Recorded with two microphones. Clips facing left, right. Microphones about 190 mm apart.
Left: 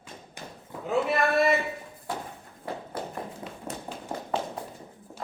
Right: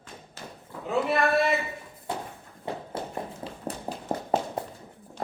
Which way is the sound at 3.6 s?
40° right (ahead or behind).